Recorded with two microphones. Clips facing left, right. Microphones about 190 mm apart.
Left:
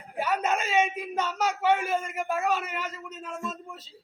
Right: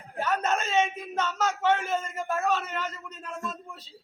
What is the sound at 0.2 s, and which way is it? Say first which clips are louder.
Speech: even; 10° left (ahead or behind).